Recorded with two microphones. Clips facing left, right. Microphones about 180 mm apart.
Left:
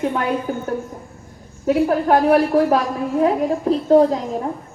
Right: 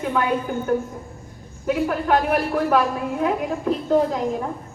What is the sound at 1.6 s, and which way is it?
A woman's voice, 40° left (ahead or behind).